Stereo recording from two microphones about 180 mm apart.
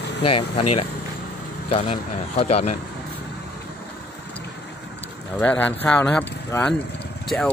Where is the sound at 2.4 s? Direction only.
35° left (ahead or behind).